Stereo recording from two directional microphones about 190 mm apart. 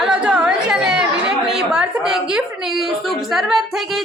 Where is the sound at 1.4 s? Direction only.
5° right (ahead or behind).